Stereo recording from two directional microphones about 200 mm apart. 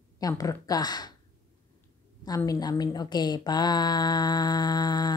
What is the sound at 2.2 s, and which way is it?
A woman's voice, 20° left (ahead or behind).